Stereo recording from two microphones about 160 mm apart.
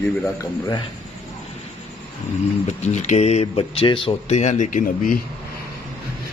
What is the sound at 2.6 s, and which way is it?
Speech, 45° left (ahead or behind).